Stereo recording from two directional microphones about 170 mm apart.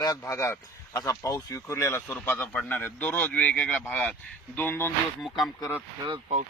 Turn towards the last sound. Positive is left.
turn(degrees=-35)  # may be behind; listen again after turning